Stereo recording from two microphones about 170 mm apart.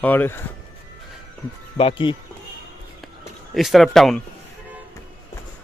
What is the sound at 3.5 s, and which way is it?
Speech, centre (ahead or behind).